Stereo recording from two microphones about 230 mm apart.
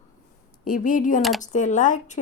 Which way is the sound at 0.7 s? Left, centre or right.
Left.